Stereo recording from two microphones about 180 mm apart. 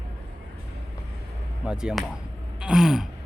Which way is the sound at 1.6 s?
5° right (ahead or behind).